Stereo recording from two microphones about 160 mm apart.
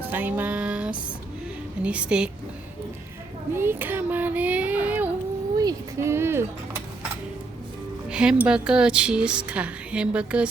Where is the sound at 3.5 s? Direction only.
15° right (ahead or behind).